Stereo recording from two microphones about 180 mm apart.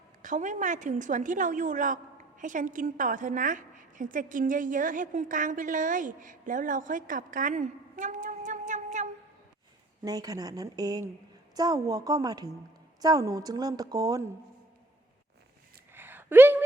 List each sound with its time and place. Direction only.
0.2 s a woman's voice: 45° right (ahead or behind)
10.0 s speech: 20° right (ahead or behind)
15.9 s a sound: 10° right (ahead or behind)